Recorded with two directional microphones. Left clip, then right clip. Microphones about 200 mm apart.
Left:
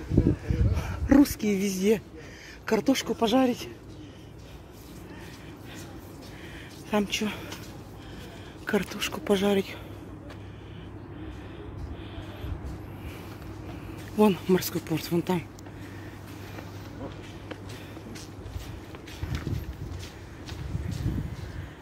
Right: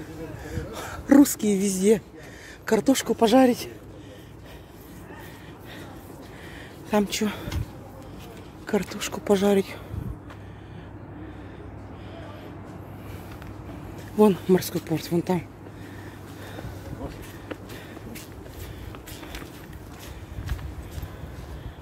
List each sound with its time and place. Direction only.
0.5 s a sound: 20° right (ahead or behind)
2.6 s speech: 15° right (ahead or behind)
6.9 s speech: 20° right (ahead or behind)
8.6 s speech: 10° right (ahead or behind)
14.1 s speech: 10° right (ahead or behind)